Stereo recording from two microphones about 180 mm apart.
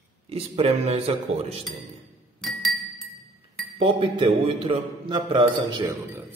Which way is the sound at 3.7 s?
30° right (ahead or behind).